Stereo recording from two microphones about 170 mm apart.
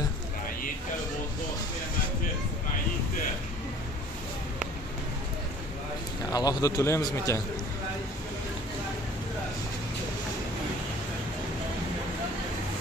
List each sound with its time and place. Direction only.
6.3 s a man's voice: 20° left (ahead or behind)